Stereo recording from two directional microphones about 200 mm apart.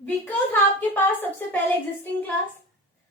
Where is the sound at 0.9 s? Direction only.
10° left (ahead or behind).